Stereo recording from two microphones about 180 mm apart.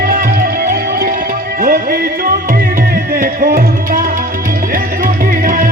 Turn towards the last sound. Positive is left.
turn(degrees=-50)  # may be behind; listen again after turning